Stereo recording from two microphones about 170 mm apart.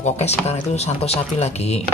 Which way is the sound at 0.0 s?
40° left (ahead or behind).